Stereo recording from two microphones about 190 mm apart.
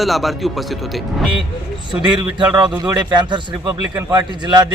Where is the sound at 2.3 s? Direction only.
25° right (ahead or behind).